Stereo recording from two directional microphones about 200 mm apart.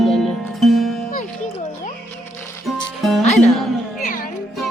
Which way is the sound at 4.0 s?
40° left (ahead or behind).